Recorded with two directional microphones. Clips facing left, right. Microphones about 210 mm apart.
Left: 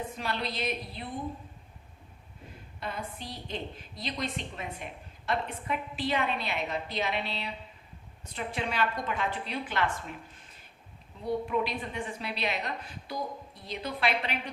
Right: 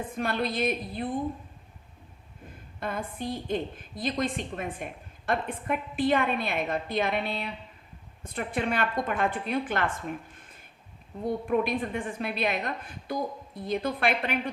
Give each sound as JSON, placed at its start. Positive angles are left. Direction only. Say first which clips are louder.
{"t": 0.2, "sound": "a woman's voice", "louder": "right 8 dB", "side_deg": -50}
{"t": 2.8, "sound": "a woman's voice", "louder": "right 6 dB", "side_deg": -50}
{"t": 11.4, "sound": "a woman's voice", "louder": "right 5 dB", "side_deg": -50}